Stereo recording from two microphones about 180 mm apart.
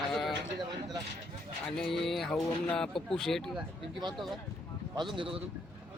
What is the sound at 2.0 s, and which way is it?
Speech, centre (ahead or behind).